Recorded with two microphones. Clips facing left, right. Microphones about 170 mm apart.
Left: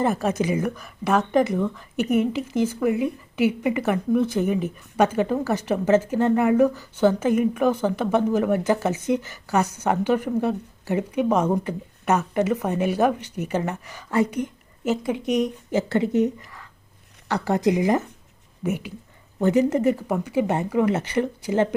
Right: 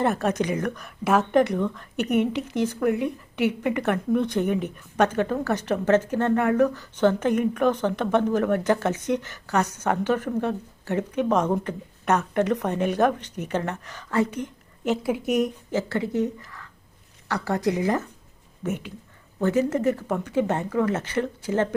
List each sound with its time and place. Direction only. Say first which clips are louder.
0.0 s speech: left 1 dB; 5° left (ahead or behind)
14.8 s speech: left 1 dB; 5° right (ahead or behind)
15.7 s a woman's voice: left 7 dB; 20° left (ahead or behind)